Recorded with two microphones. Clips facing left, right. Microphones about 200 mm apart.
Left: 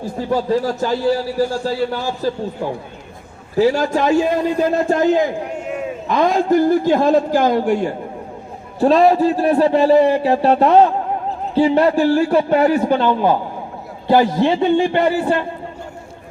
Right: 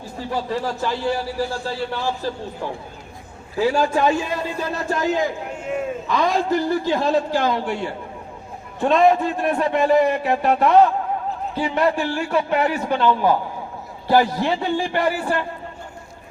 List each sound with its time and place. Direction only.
0.2 s a man's voice: 40° left (ahead or behind)
3.5 s a man's voice: 40° left (ahead or behind)
4.2 s a man's voice: 50° left (ahead or behind); by 15.4 s 25° left (ahead or behind)